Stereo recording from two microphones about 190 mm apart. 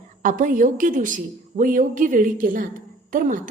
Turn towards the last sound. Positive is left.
turn(degrees=-45)  # may be behind; listen again after turning